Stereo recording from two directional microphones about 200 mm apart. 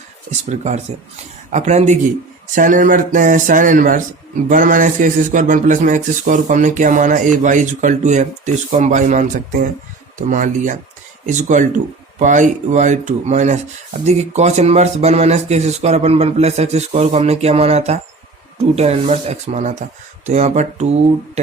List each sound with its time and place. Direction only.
0.4 s speech: 35° right (ahead or behind)